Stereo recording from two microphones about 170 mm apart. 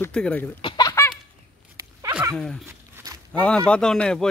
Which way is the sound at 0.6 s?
25° left (ahead or behind).